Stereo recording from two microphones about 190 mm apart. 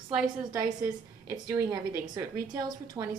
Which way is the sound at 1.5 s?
15° right (ahead or behind).